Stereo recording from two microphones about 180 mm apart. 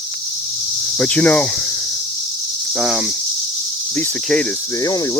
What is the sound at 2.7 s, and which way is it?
Cricket, 5° right (ahead or behind).